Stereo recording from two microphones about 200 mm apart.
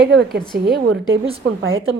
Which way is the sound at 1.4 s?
75° right (ahead or behind).